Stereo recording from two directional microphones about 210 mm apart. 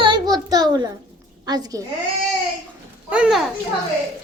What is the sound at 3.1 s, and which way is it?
Speech, 5° right (ahead or behind).